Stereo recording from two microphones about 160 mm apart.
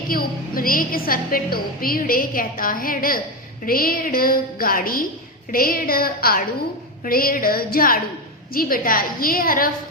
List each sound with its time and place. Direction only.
0.1 s a woman's voice: 65° left (ahead or behind)